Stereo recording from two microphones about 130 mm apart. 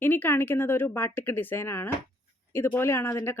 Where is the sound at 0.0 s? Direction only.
15° left (ahead or behind).